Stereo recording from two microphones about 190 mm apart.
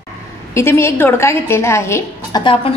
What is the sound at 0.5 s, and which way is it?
A woman's voice, 15° left (ahead or behind).